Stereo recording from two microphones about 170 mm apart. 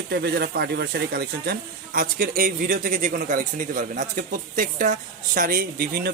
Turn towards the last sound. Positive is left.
turn(degrees=-60)  # may be behind; listen again after turning